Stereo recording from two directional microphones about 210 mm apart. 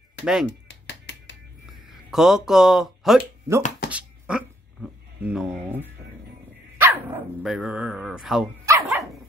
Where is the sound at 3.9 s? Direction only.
5° right (ahead or behind).